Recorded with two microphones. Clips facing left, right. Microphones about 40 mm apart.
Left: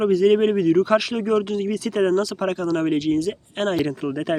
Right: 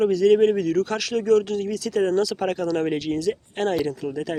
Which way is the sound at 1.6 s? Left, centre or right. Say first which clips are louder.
Left 2 dB; left.